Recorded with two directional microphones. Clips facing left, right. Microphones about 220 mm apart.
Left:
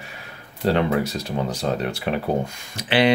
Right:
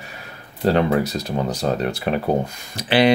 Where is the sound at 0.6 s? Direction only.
45° right (ahead or behind).